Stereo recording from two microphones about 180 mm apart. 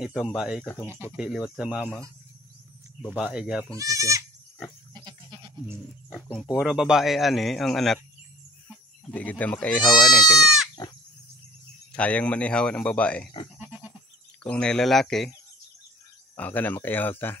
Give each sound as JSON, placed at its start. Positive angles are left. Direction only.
{"t": 0.0, "sound": "a man's voice", "side_deg": 0}
{"t": 3.2, "sound": "a man's voice", "side_deg": -5}
{"t": 3.7, "sound": "speech", "side_deg": -20}
{"t": 4.9, "sound": "goat", "side_deg": -25}
{"t": 6.3, "sound": "speech", "side_deg": 10}
{"t": 6.6, "sound": "a man's voice", "side_deg": 0}
{"t": 9.1, "sound": "speech", "side_deg": 10}
{"t": 9.8, "sound": "speech", "side_deg": 25}
{"t": 10.1, "sound": "speech", "side_deg": 0}
{"t": 11.9, "sound": "speech", "side_deg": 5}
{"t": 13.6, "sound": "goat", "side_deg": -5}
{"t": 14.4, "sound": "a man's voice", "side_deg": 5}
{"t": 16.3, "sound": "speech", "side_deg": 10}